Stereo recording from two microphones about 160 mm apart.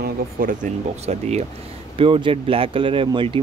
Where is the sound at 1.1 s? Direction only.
45° right (ahead or behind).